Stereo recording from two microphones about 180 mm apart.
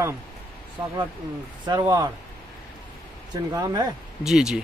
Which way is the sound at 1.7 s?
20° right (ahead or behind).